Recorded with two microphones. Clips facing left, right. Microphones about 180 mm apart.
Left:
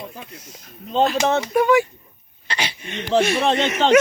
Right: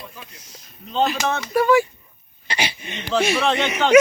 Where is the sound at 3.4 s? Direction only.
30° left (ahead or behind).